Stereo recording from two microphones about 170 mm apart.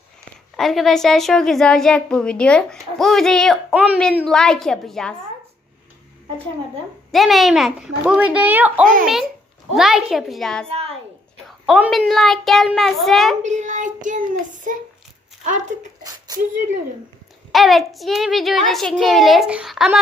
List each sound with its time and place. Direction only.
0.5 s a child's voice: centre (ahead or behind)
7.1 s a child's voice: centre (ahead or behind)
13.4 s child singing: 45° right (ahead or behind)
16.0 s a sound: 25° right (ahead or behind)
17.5 s a child's voice: centre (ahead or behind)